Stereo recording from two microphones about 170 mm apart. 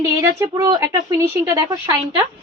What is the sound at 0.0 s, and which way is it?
A woman's voice, 15° right (ahead or behind).